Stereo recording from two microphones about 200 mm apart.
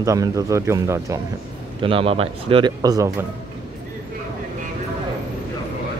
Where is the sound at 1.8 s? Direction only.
30° right (ahead or behind).